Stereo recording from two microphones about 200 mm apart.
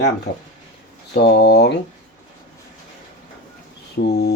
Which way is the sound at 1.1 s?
55° left (ahead or behind).